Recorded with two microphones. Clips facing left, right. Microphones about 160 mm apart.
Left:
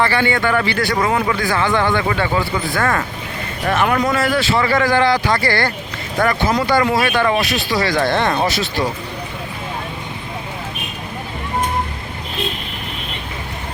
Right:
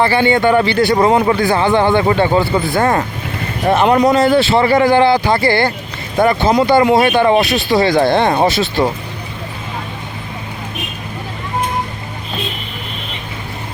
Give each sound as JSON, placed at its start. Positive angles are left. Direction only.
{"t": 0.0, "sound": "a man's voice", "side_deg": -20}